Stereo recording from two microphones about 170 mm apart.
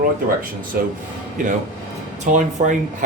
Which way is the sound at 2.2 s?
45° right (ahead or behind).